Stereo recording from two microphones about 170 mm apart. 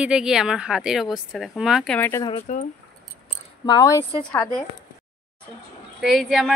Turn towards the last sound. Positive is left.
turn(degrees=0)  # may be behind; listen again after turning